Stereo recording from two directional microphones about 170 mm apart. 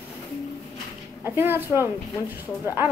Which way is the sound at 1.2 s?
10° right (ahead or behind).